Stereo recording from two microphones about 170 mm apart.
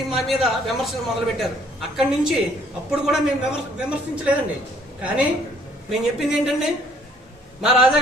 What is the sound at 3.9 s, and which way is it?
Speech, 5° right (ahead or behind).